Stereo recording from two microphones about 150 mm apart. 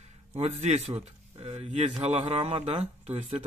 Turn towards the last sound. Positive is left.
turn(degrees=-45)  # may be behind; listen again after turning